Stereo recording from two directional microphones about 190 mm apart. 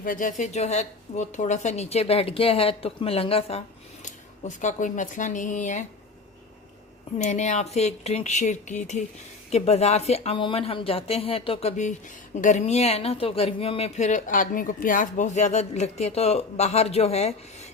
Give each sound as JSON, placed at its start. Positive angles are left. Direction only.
{"t": 0.0, "sound": "speech", "side_deg": 45}
{"t": 4.0, "sound": "speech", "side_deg": 40}
{"t": 7.2, "sound": "speech", "side_deg": 40}